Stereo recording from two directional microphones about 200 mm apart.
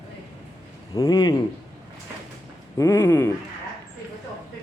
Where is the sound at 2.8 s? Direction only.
15° left (ahead or behind).